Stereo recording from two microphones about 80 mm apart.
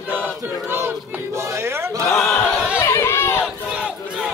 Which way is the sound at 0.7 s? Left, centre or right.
Right.